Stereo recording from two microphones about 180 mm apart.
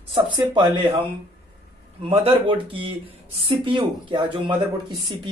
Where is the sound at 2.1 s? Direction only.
30° right (ahead or behind).